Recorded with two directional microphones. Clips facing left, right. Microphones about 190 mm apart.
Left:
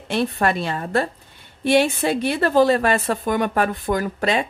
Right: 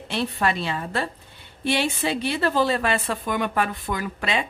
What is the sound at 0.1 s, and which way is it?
A woman's voice, 50° left (ahead or behind).